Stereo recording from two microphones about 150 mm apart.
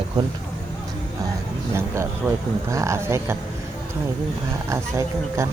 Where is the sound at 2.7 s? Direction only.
20° right (ahead or behind).